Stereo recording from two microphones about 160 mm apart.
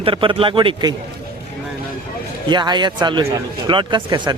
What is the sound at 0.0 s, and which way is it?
Speech, 35° right (ahead or behind).